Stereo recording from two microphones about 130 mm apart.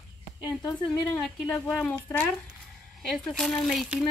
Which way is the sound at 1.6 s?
15° left (ahead or behind).